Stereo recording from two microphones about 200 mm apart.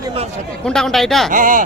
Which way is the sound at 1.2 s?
40° right (ahead or behind).